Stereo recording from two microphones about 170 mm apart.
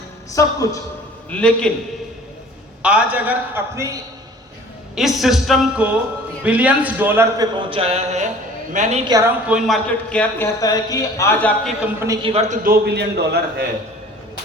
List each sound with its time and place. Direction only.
0.3 s a woman's voice: 20° left (ahead or behind)
1.3 s a man's voice: 5° left (ahead or behind)
2.8 s a man's voice: 10° right (ahead or behind)
4.9 s a woman's voice: centre (ahead or behind)
7.5 s mantra: 30° right (ahead or behind)
8.7 s a woman's voice: 45° right (ahead or behind)
9.0 s a woman's voice: 20° right (ahead or behind)
9.5 s a man's voice: centre (ahead or behind); by 11.5 s 15° left (ahead or behind)
11.9 s a woman's voice: 20° right (ahead or behind)
12.2 s mantra: 40° right (ahead or behind)
12.6 s a man's voice: 70° right (ahead or behind)